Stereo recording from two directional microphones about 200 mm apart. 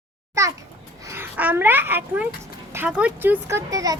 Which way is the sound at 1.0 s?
10° right (ahead or behind).